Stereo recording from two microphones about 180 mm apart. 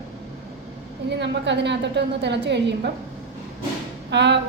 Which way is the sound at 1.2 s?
75° right (ahead or behind).